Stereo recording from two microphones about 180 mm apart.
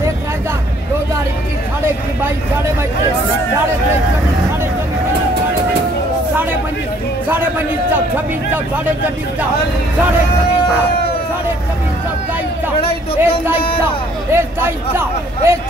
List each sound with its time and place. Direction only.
12.8 s speech: 30° left (ahead or behind)
14.3 s a man's voice: 15° right (ahead or behind)